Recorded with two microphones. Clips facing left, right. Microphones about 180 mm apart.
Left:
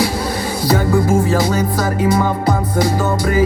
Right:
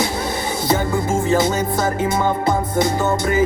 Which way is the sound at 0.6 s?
25° right (ahead or behind).